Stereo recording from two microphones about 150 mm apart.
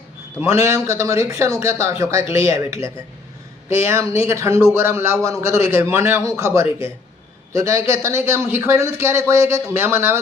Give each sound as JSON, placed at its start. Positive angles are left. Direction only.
{"t": 0.3, "sound": "a man's voice", "side_deg": -20}